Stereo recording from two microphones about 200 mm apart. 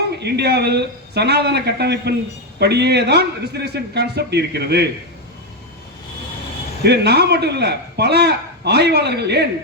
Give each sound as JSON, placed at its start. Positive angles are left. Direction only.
{"t": 0.2, "sound": "a man's voice", "side_deg": -55}
{"t": 6.8, "sound": "a man's voice", "side_deg": -55}